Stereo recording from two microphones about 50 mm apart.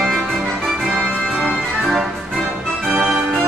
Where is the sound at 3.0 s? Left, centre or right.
Centre.